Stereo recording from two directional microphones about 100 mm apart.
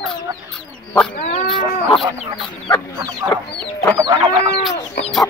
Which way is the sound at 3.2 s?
35° right (ahead or behind).